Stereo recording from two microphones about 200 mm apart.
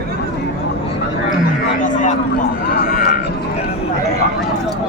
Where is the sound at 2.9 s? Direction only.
45° left (ahead or behind).